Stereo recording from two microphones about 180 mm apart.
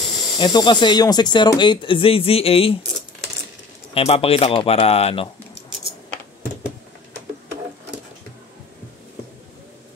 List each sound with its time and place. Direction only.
0.4 s speech: 25° left (ahead or behind)
3.9 s speech: 35° left (ahead or behind)